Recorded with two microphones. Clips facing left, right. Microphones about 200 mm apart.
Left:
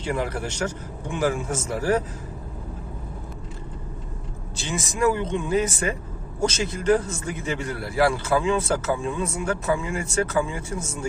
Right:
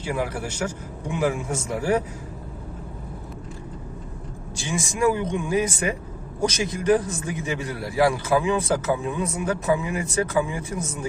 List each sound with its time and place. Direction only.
0.0 s a man's voice: 5° right (ahead or behind)
4.5 s a man's voice: 15° right (ahead or behind)